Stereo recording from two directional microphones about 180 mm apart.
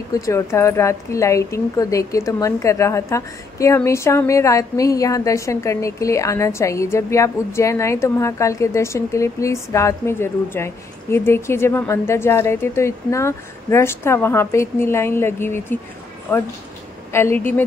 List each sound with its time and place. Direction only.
0.1 s speech: 15° left (ahead or behind)